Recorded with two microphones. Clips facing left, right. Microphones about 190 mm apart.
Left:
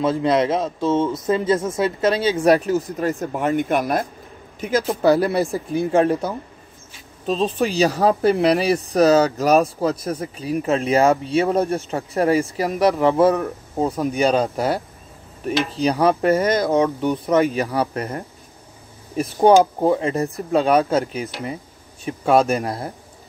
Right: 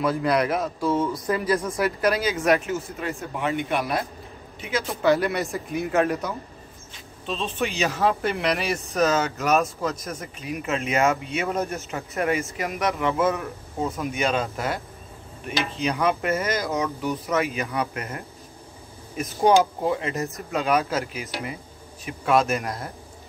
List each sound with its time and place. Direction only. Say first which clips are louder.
0.0 s speech: left 4 dB; 25° left (ahead or behind)